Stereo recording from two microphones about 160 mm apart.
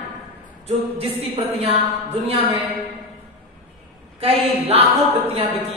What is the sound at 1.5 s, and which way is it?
Speech, 40° right (ahead or behind).